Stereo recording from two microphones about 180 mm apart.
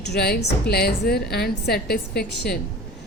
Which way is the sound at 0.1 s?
65° left (ahead or behind).